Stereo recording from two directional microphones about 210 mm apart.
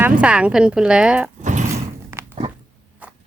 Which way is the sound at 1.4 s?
35° right (ahead or behind).